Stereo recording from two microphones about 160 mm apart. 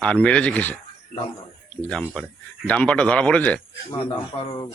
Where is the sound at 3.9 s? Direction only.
35° left (ahead or behind).